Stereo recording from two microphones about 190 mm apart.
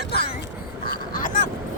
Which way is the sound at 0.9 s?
45° left (ahead or behind).